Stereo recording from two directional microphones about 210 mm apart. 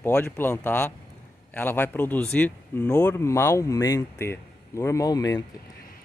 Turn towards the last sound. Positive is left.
turn(degrees=15)  # may be behind; listen again after turning